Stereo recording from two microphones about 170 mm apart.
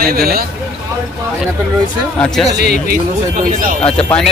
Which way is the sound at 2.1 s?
5° left (ahead or behind).